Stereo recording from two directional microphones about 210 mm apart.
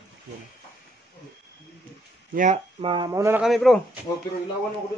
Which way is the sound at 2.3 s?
35° right (ahead or behind).